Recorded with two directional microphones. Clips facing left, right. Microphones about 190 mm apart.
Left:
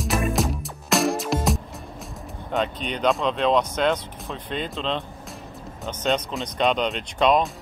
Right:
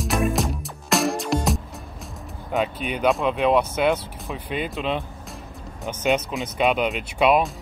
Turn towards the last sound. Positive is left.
turn(degrees=-10)  # may be behind; listen again after turning